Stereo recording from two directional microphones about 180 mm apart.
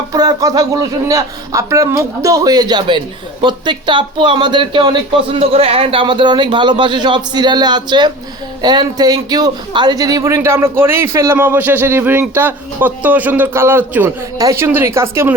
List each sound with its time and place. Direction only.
0.1 s a man's voice: 20° right (ahead or behind)